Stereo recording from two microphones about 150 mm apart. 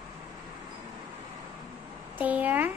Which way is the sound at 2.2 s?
10° right (ahead or behind).